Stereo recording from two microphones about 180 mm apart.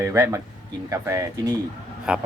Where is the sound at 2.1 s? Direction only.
5° right (ahead or behind).